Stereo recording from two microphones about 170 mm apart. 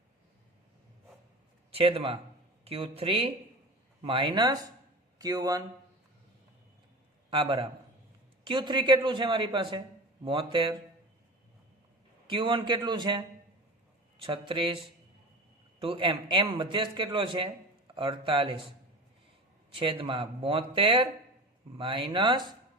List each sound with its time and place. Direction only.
1.7 s a man's voice: 35° right (ahead or behind)
7.3 s a man's voice: 30° right (ahead or behind)
12.3 s a man's voice: 30° right (ahead or behind)
15.8 s a man's voice: 30° right (ahead or behind)
19.7 s a man's voice: 30° right (ahead or behind)